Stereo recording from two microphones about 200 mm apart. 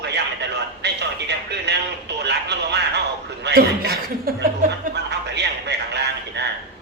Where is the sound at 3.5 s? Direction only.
50° right (ahead or behind).